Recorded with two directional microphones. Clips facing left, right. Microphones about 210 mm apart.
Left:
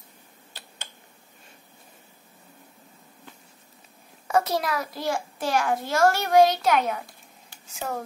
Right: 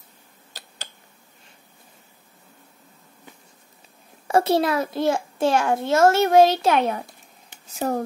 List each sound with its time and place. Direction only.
4.3 s a child's voice: 30° right (ahead or behind)